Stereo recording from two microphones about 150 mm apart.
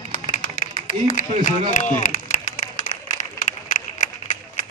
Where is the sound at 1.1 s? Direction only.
60° left (ahead or behind).